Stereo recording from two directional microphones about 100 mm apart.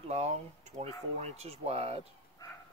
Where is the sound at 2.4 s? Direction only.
35° left (ahead or behind).